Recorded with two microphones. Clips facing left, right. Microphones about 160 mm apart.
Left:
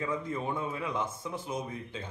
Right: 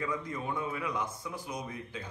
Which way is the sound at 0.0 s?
25° left (ahead or behind).